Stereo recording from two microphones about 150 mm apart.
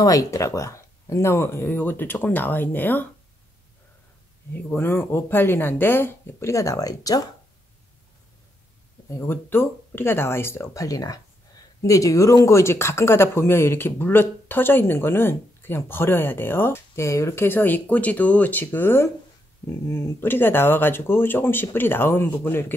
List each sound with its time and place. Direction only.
0.0 s speech: 25° left (ahead or behind)
4.6 s speech: 15° left (ahead or behind)
9.1 s speech: 15° left (ahead or behind)